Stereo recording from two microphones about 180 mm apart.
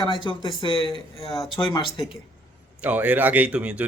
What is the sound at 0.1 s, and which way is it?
Speech, 25° left (ahead or behind).